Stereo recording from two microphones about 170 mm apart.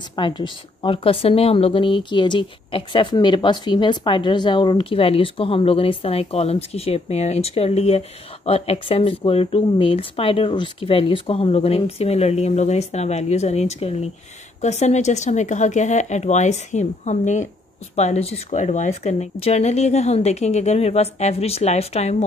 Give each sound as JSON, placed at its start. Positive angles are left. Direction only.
{"t": 0.1, "sound": "speech", "side_deg": 30}